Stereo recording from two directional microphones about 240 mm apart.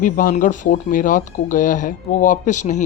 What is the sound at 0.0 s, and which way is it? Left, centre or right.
Speech, left.